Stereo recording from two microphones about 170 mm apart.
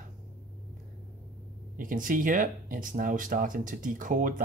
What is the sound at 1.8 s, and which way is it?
Speech, 55° right (ahead or behind).